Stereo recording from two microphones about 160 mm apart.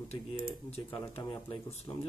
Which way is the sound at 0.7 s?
40° left (ahead or behind).